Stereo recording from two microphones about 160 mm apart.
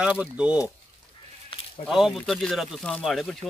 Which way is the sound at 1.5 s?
35° left (ahead or behind).